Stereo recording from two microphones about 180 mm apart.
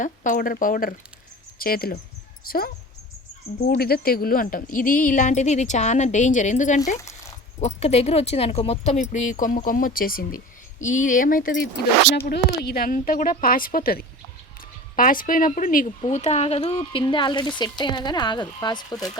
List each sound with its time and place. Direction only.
0.0 s speech: 45° left (ahead or behind)
3.7 s speech: 55° left (ahead or behind)
12.1 s speech: 65° left (ahead or behind)
16.0 s speech: 40° left (ahead or behind); by 19.1 s 20° left (ahead or behind)